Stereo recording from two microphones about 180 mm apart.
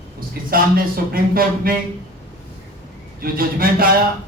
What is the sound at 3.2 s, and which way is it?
Speech, 55° right (ahead or behind).